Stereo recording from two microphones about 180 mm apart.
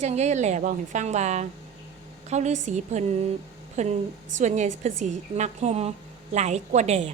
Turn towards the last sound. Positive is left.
turn(degrees=-40)  # may be behind; listen again after turning